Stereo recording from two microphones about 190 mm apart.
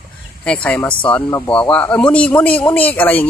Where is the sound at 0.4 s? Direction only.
5° left (ahead or behind).